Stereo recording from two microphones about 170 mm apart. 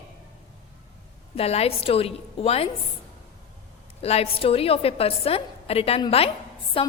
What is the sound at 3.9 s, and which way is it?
A woman's voice, 35° left (ahead or behind).